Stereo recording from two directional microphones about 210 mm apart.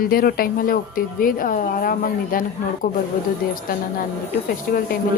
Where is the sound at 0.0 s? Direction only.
45° left (ahead or behind).